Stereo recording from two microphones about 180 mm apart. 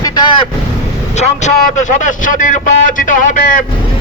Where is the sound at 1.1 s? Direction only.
40° left (ahead or behind).